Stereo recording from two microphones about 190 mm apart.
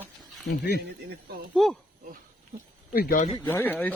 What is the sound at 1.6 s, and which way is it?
Speech, centre (ahead or behind).